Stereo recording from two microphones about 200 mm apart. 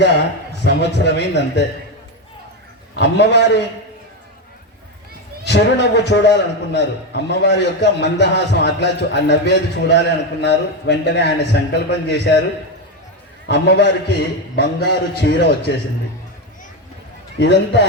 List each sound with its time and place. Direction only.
0.6 s a man's voice: 60° left (ahead or behind)
2.9 s a man's voice: 60° left (ahead or behind)
5.5 s a man's voice: 60° left (ahead or behind)
13.5 s a man's voice: 55° left (ahead or behind)
17.4 s a man's voice: 60° left (ahead or behind)